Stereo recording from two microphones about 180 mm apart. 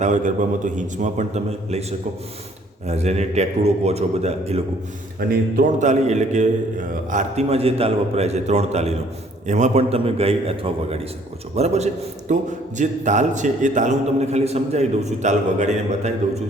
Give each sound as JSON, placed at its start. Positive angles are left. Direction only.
{"t": 0.0, "sound": "a man's voice", "side_deg": -45}
{"t": 5.3, "sound": "a man's voice", "side_deg": -50}